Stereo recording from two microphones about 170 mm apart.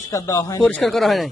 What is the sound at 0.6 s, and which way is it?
Speech, 5° left (ahead or behind).